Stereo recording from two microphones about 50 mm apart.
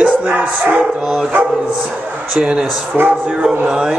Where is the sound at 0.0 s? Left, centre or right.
Right.